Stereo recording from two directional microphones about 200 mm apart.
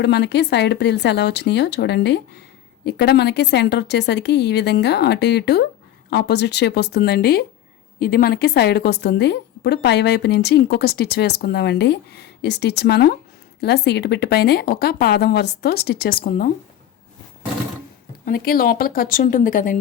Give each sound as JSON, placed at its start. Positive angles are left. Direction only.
{"t": 0.0, "sound": "a woman's voice", "side_deg": 55}
{"t": 18.3, "sound": "speech", "side_deg": 45}